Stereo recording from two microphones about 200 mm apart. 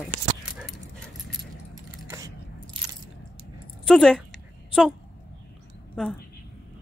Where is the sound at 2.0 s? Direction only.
15° right (ahead or behind).